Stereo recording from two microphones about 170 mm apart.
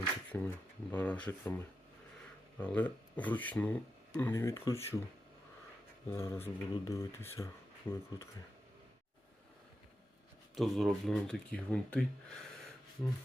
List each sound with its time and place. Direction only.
0.0 s speech: 10° left (ahead or behind)
6.1 s speech: 15° left (ahead or behind)
10.5 s speech: centre (ahead or behind)